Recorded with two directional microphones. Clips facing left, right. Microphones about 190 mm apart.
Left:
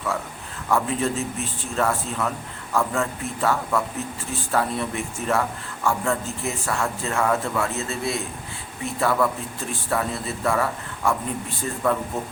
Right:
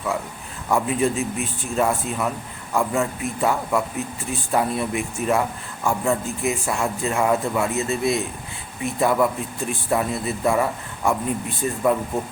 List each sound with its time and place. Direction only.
0.7 s a man's voice: 15° right (ahead or behind)